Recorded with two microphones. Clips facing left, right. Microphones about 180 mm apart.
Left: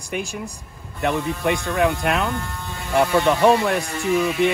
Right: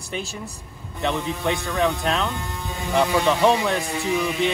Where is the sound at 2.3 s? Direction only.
20° right (ahead or behind).